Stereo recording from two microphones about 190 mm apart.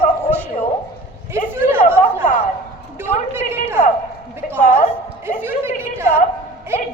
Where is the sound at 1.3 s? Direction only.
10° right (ahead or behind).